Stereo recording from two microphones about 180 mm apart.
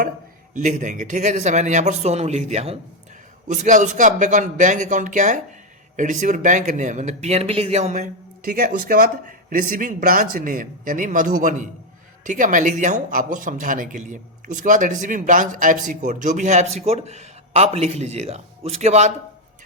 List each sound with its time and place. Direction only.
0.5 s speech: 45° right (ahead or behind)
8.4 s speech: 55° right (ahead or behind); by 19.1 s 40° right (ahead or behind)